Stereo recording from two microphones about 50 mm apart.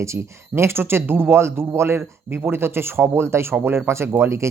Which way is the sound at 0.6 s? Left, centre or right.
Right.